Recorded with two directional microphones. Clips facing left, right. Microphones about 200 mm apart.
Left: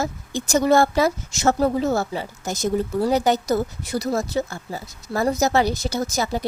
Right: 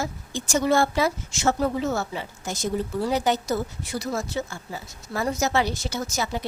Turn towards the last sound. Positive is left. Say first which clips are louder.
# left 4 dB
turn(degrees=35)  # may be behind; listen again after turning